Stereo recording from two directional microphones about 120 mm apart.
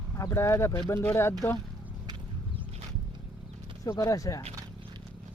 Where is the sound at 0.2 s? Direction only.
25° left (ahead or behind).